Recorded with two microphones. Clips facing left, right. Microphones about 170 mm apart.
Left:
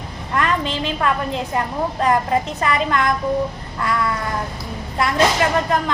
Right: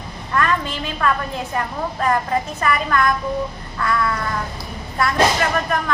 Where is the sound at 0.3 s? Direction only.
25° left (ahead or behind).